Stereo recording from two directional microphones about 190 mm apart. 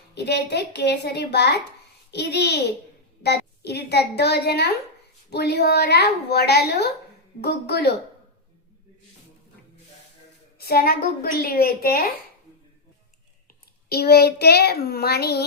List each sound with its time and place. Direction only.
0.1 s a woman's voice: 60° left (ahead or behind)
10.6 s a woman's voice: 55° left (ahead or behind)
13.9 s a woman's voice: 55° left (ahead or behind)